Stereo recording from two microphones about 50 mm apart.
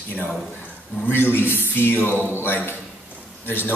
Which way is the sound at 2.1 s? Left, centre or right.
Right.